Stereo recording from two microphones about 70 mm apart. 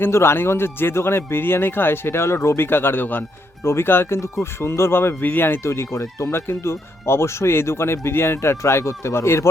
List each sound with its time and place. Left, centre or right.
0.0 s speech: left